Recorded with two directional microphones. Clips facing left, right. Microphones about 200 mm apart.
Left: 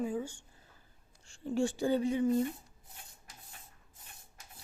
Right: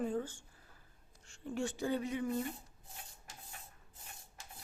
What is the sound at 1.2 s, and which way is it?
Speech, 30° left (ahead or behind).